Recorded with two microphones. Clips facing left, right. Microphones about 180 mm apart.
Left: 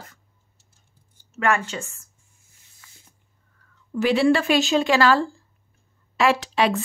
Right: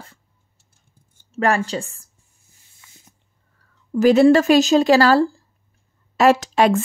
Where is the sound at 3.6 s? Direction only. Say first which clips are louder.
Left 1 dB; 30° right (ahead or behind).